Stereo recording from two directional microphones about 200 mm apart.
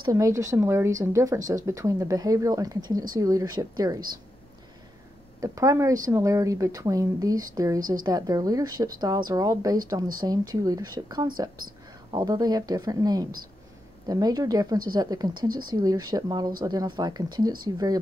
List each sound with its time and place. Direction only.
0.0 s speech: 15° right (ahead or behind)
5.4 s speech: 15° right (ahead or behind)